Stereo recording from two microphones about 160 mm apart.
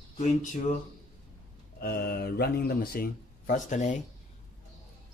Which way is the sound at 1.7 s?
75° left (ahead or behind).